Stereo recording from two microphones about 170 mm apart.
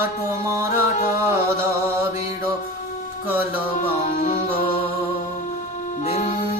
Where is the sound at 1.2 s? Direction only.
15° right (ahead or behind).